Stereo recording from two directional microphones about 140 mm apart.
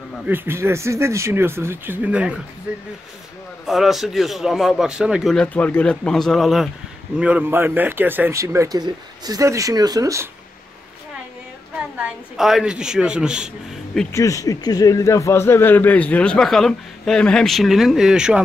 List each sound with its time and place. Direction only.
0.3 s speech: 15° right (ahead or behind)
3.6 s a man's voice: centre (ahead or behind)
5.3 s a man's voice: 10° left (ahead or behind); by 10.2 s 25° right (ahead or behind)
12.0 s a man's voice: centre (ahead or behind)
14.1 s a man's voice: 25° left (ahead or behind); by 18.4 s 5° right (ahead or behind)